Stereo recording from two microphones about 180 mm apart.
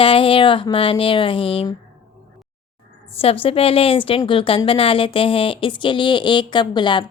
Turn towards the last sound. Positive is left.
turn(degrees=25)  # may be behind; listen again after turning